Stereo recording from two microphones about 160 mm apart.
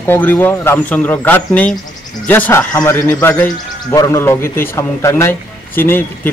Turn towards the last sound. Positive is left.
turn(degrees=15)  # may be behind; listen again after turning